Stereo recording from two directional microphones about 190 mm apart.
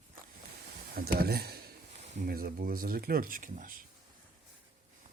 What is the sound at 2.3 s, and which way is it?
Speech, 50° right (ahead or behind).